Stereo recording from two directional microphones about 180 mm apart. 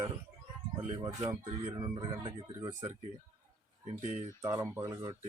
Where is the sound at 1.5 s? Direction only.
30° right (ahead or behind).